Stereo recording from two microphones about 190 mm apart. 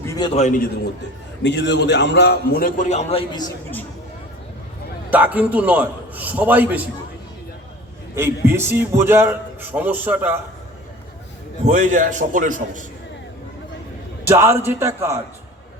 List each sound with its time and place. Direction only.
0.0 s a sound: 15° left (ahead or behind)
0.3 s a man's voice: 40° left (ahead or behind)
1.4 s a man's voice: 65° left (ahead or behind); by 3.4 s 30° left (ahead or behind)
5.1 s a man's voice: 10° right (ahead or behind)
8.1 s a man's voice: 10° right (ahead or behind)
11.6 s a man's voice: 40° right (ahead or behind)
14.3 s a man's voice: 15° right (ahead or behind)